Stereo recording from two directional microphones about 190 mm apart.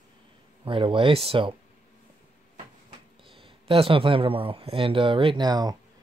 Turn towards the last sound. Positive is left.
turn(degrees=-20)  # may be behind; listen again after turning